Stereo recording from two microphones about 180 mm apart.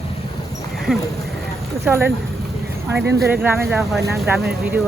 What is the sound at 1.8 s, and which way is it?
Speech, 15° right (ahead or behind).